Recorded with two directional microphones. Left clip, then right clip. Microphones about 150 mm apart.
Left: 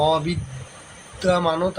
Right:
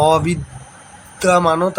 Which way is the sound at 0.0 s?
45° right (ahead or behind).